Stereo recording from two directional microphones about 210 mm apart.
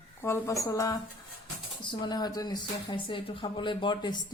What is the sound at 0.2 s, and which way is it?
A woman's voice, 15° left (ahead or behind).